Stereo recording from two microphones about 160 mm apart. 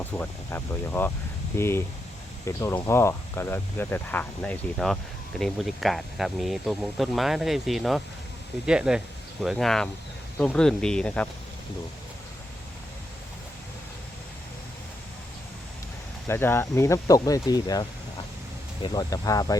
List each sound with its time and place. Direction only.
0.0 s speech: 15° left (ahead or behind)
16.2 s speech: 15° left (ahead or behind)